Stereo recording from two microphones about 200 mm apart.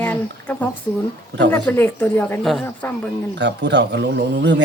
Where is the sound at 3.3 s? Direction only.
60° right (ahead or behind).